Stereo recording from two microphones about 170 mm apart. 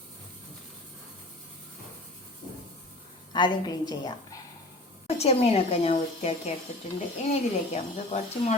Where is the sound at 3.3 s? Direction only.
25° left (ahead or behind).